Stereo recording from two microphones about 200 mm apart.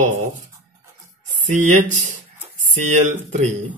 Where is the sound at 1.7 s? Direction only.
40° right (ahead or behind).